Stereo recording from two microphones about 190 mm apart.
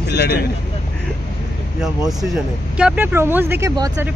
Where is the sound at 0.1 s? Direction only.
60° left (ahead or behind).